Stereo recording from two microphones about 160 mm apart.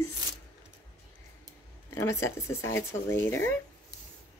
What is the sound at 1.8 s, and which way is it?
Speech, 15° left (ahead or behind).